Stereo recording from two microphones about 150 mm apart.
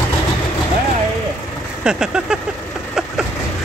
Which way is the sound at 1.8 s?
5° right (ahead or behind).